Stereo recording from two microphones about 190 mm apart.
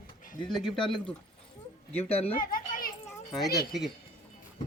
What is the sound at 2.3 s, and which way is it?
Children playing, 45° left (ahead or behind).